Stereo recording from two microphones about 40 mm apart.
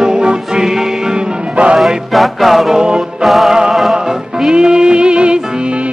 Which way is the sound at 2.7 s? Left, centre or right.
Right.